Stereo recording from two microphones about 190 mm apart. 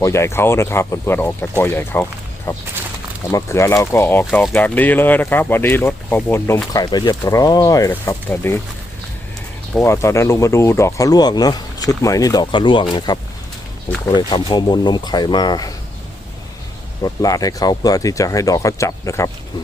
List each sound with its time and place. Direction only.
0.0 s speech: 15° left (ahead or behind)
9.7 s speech: 15° left (ahead or behind)
17.0 s speech: 20° left (ahead or behind)